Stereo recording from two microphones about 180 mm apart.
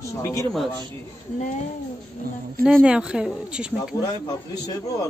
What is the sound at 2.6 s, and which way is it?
Speech, centre (ahead or behind).